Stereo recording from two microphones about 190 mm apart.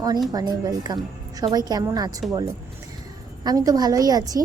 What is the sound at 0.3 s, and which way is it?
A woman's voice, 20° right (ahead or behind).